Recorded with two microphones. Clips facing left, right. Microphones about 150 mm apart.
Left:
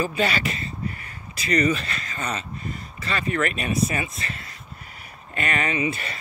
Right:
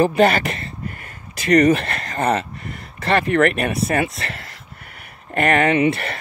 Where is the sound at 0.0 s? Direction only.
55° right (ahead or behind).